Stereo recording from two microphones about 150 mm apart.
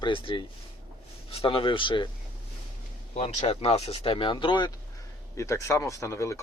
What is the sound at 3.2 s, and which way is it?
Speech, 40° left (ahead or behind).